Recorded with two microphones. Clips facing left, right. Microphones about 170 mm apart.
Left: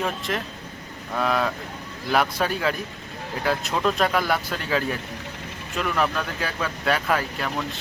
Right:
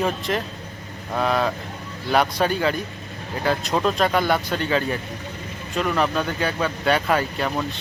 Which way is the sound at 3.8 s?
Centre (ahead or behind).